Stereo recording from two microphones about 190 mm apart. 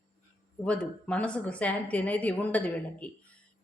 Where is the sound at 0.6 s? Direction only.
5° left (ahead or behind).